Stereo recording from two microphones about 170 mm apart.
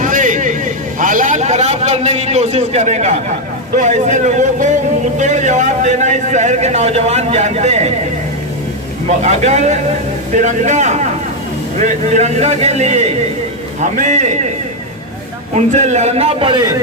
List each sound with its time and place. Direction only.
0.0 s vehicle: 50° right (ahead or behind)
3.8 s speech: 45° right (ahead or behind)
9.0 s a man's voice: 45° right (ahead or behind)
15.5 s a man's voice: 45° right (ahead or behind); by 16.7 s 25° right (ahead or behind)